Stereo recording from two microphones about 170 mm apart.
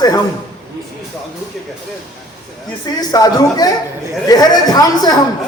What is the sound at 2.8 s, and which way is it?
A man's voice, 25° left (ahead or behind).